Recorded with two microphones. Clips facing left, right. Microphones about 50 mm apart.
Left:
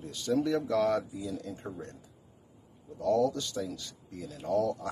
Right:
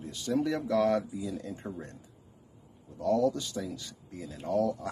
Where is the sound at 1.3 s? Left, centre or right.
Centre.